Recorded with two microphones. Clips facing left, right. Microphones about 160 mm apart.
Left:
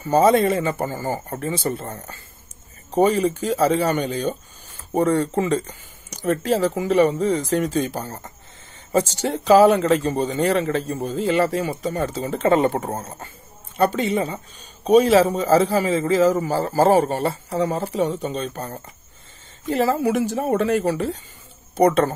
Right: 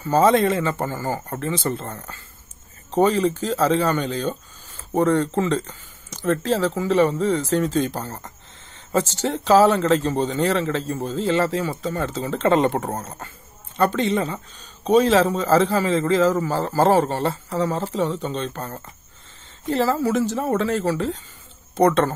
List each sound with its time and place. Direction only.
0.0 s speech: 10° left (ahead or behind)